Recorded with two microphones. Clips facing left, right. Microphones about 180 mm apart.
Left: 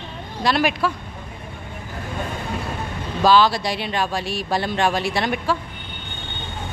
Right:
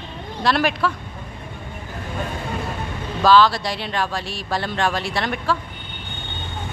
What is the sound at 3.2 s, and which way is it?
Speech, 15° left (ahead or behind).